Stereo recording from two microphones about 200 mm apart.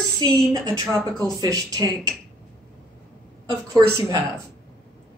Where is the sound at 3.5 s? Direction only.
20° right (ahead or behind).